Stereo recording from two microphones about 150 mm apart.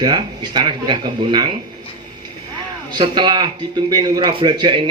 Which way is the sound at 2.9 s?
30° right (ahead or behind).